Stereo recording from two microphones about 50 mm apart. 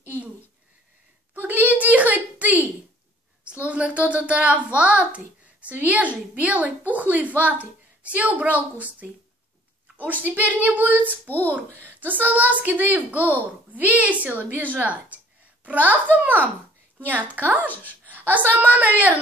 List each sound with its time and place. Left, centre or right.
1.3 s a sound: right
4.7 s a child's voice: right
10.5 s a child's voice: right
11.0 s a child's voice: left
12.0 s a child's voice: right
17.6 s speech: left
18.1 s a sound: right
18.5 s a child's voice: right